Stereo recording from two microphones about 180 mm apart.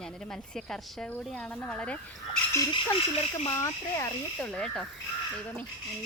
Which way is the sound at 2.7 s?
25° left (ahead or behind).